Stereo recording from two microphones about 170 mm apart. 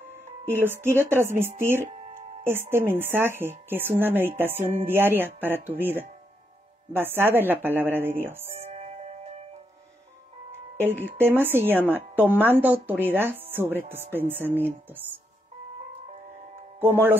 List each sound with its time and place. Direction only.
0.1 s speech: 15° right (ahead or behind)
1.9 s music: 35° right (ahead or behind)
2.4 s speech: 15° right (ahead or behind)
8.5 s music: 40° right (ahead or behind)
11.1 s speech: 15° right (ahead or behind)
16.8 s speech: 15° right (ahead or behind)